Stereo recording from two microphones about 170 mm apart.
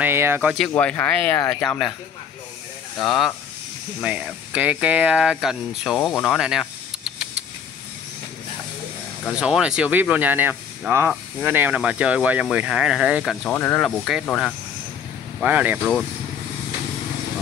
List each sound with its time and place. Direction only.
0.0 s speech: 15° right (ahead or behind)
0.7 s speech: 10° left (ahead or behind)
3.0 s speech: centre (ahead or behind)
9.3 s speech: 5° right (ahead or behind)
15.4 s speech: 10° right (ahead or behind)
15.8 s speech: 5° left (ahead or behind)